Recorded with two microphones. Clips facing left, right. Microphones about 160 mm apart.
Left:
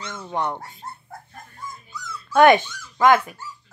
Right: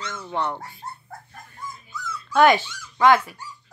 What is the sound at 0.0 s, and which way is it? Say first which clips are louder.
Speech: left 1 dB; 15° left (ahead or behind).